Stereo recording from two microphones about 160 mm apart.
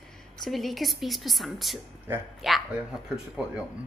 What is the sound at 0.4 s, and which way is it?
A woman's voice, centre (ahead or behind).